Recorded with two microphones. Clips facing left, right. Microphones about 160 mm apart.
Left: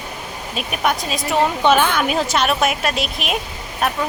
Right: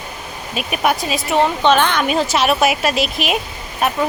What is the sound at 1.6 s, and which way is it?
Speech, 10° left (ahead or behind).